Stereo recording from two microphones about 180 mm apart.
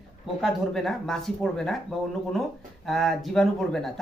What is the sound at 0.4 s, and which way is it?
Speech, centre (ahead or behind).